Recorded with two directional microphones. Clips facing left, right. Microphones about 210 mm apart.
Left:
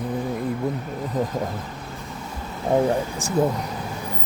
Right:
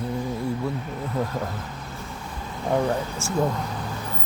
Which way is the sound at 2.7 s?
20° left (ahead or behind).